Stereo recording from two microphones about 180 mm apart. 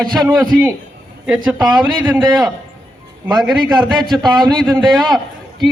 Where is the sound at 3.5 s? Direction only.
25° right (ahead or behind).